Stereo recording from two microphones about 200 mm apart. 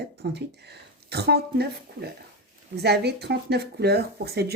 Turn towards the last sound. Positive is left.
turn(degrees=-55)  # may be behind; listen again after turning